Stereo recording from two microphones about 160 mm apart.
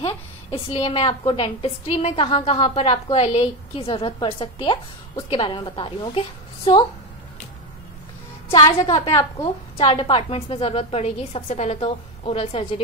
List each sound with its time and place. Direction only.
0.0 s a woman's voice: 35° left (ahead or behind)
8.7 s a woman's voice: 35° left (ahead or behind)
9.0 s a woman's voice: 20° left (ahead or behind)
9.8 s a woman's voice: 35° left (ahead or behind)